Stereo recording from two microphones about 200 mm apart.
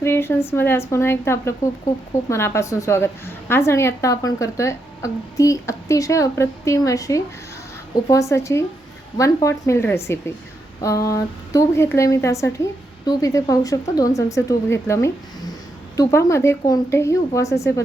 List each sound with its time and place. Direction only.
0.0 s a woman's voice: 10° left (ahead or behind)